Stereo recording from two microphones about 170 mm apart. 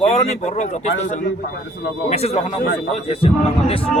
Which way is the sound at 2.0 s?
35° left (ahead or behind).